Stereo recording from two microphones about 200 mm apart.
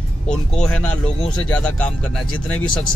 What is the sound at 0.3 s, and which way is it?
Speech, 5° left (ahead or behind).